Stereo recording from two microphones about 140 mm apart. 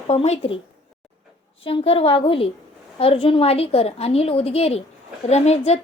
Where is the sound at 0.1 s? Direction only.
45° left (ahead or behind).